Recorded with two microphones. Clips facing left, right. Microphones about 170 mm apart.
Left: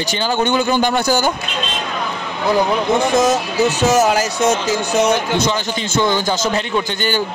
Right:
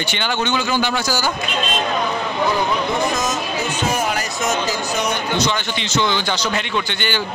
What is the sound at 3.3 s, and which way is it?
Speech, 70° left (ahead or behind).